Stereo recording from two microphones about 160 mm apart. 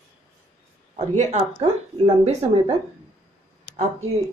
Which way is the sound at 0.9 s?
45° right (ahead or behind).